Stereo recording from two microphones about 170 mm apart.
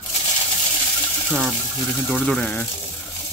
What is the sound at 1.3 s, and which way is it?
Speech, 5° left (ahead or behind).